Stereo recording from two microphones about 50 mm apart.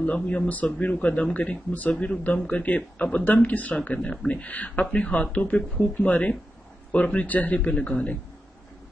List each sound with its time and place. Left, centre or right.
0.0 s speech: left
7.5 s speech: left